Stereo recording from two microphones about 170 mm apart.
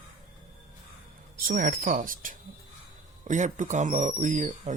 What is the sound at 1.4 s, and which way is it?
Speech, 55° right (ahead or behind).